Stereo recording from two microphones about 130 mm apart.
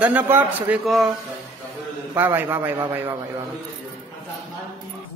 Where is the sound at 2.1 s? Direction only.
15° right (ahead or behind).